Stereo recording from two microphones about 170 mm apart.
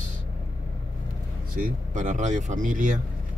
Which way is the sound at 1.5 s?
50° right (ahead or behind).